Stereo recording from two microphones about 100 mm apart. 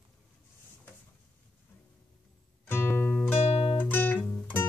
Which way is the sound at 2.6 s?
25° left (ahead or behind).